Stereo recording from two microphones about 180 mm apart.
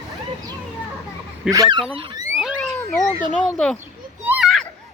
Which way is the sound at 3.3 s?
5° left (ahead or behind).